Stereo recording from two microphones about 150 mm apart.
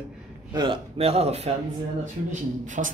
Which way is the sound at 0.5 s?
35° right (ahead or behind).